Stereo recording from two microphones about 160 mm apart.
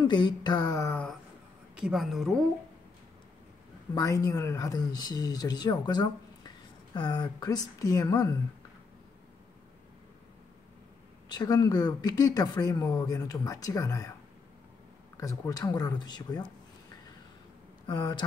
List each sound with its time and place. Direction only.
0.0 s speech: 25° left (ahead or behind)
0.8 s a sound: 10° left (ahead or behind)
1.8 s speech: centre (ahead or behind)
3.9 s speech: 20° left (ahead or behind)
11.2 s speech: 25° left (ahead or behind)
15.1 s speech: 20° left (ahead or behind)
17.8 s speech: 25° left (ahead or behind)